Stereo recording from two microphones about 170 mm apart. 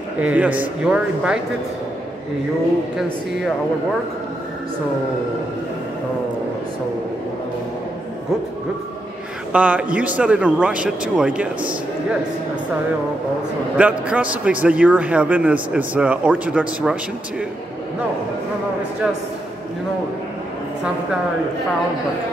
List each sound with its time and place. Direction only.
0.2 s a man's voice: 10° right (ahead or behind)
9.5 s a man's voice: 10° right (ahead or behind)
13.7 s a man's voice: 10° right (ahead or behind)